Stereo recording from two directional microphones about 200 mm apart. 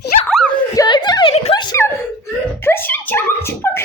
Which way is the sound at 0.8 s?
20° left (ahead or behind).